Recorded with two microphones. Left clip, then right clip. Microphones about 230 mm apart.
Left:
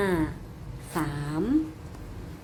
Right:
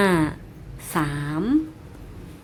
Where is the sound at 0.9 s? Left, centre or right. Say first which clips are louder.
Right 5 dB; right.